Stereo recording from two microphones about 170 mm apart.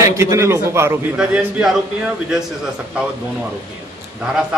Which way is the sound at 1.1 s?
5° right (ahead or behind).